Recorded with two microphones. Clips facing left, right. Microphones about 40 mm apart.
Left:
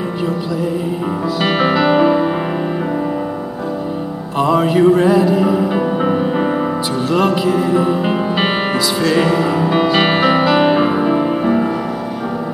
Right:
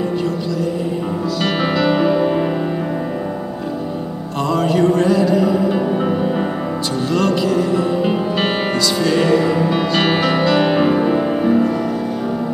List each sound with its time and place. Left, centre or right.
1.4 s music: centre
4.4 s music: centre